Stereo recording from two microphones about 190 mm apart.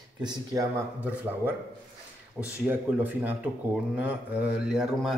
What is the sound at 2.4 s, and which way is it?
Speech, 10° right (ahead or behind).